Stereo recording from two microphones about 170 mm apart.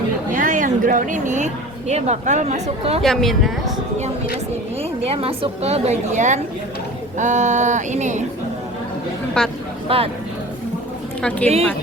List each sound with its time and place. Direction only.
0.3 s a woman's voice: 50° right (ahead or behind)
3.0 s speech: centre (ahead or behind)
4.8 s a woman's voice: 35° right (ahead or behind)
9.4 s speech: 5° left (ahead or behind)
9.9 s a woman's voice: 35° right (ahead or behind)
11.2 s a woman's voice: 5° left (ahead or behind)